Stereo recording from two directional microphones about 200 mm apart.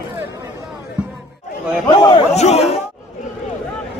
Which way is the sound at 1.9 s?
20° left (ahead or behind).